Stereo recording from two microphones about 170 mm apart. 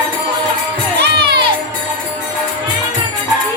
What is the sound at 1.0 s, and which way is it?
Children shouting, 75° right (ahead or behind).